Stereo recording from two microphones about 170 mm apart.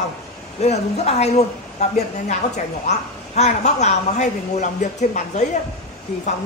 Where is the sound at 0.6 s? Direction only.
40° left (ahead or behind).